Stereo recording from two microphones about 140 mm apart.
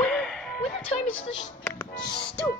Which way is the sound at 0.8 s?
45° left (ahead or behind).